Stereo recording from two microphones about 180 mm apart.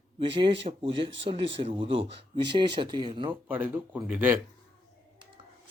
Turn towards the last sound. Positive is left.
turn(degrees=-10)  # may be behind; listen again after turning